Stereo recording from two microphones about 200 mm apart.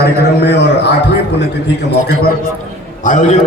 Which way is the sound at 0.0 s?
55° left (ahead or behind).